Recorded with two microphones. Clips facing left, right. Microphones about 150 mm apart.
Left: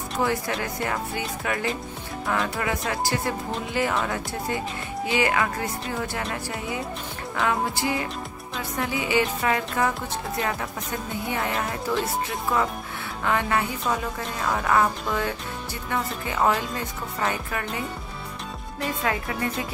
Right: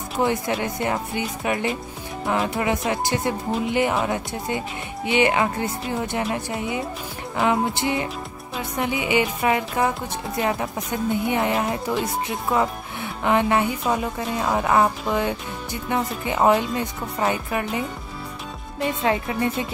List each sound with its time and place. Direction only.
0.2 s speech: 20° right (ahead or behind)
18.8 s speech: 25° right (ahead or behind)